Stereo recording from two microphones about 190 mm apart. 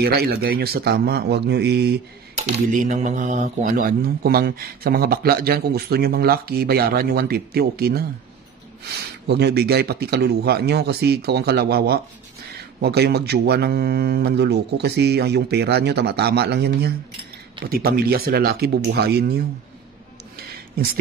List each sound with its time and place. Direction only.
0.0 s speech: 55° right (ahead or behind)
2.3 s speech: 35° right (ahead or behind); by 19.4 s 55° right (ahead or behind)
20.4 s a sound: 55° right (ahead or behind)